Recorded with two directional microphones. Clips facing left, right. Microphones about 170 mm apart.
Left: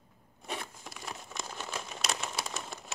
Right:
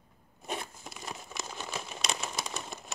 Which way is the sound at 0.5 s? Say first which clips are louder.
Right 2 dB; 15° right (ahead or behind).